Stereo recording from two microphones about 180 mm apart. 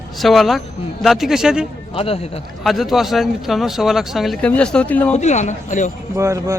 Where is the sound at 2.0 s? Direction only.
30° left (ahead or behind).